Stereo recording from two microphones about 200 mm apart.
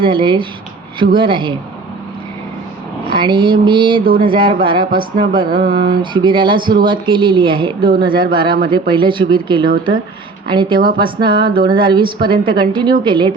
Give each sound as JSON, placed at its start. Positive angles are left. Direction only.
{"t": 0.0, "sound": "a woman's voice", "side_deg": -25}
{"t": 3.1, "sound": "a woman's voice", "side_deg": -25}